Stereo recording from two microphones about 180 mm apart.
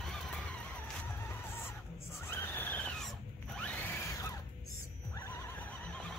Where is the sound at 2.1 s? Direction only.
10° left (ahead or behind).